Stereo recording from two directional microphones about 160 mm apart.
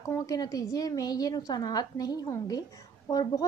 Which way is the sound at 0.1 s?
20° left (ahead or behind).